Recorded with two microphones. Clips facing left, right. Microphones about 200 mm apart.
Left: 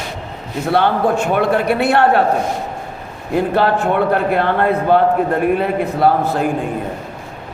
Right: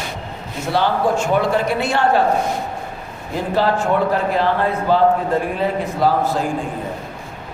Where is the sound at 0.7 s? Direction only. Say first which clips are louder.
Left 3 dB; 60° left (ahead or behind).